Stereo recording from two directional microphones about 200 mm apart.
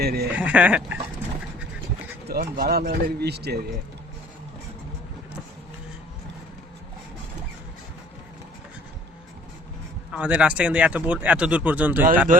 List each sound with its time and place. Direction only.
0.0 s speech: 50° right (ahead or behind)
0.3 s speech: 5° right (ahead or behind)
2.2 s speech: 50° right (ahead or behind)
10.1 s speech: 5° right (ahead or behind)